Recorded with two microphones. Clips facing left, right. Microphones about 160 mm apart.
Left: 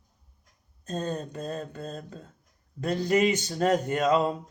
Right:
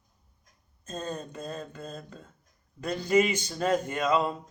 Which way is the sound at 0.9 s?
40° left (ahead or behind).